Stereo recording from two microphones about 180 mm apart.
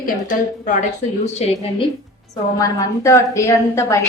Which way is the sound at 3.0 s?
15° left (ahead or behind).